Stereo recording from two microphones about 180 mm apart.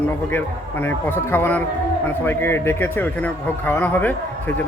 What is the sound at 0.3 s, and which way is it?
A man's voice, 10° left (ahead or behind).